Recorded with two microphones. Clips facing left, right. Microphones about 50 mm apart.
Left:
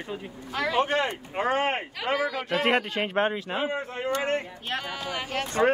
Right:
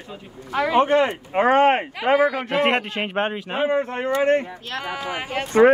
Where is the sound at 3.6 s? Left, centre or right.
Right.